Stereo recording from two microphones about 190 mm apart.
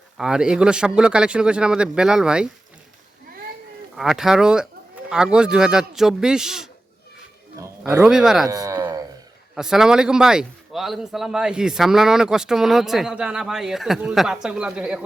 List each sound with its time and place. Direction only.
0.2 s a man's voice: 5° right (ahead or behind)
3.9 s a man's voice: centre (ahead or behind)
7.6 s speech: 15° right (ahead or behind)
8.0 s a man's voice: 5° right (ahead or behind)
8.4 s a sound: 20° right (ahead or behind)
9.6 s a man's voice: 5° right (ahead or behind)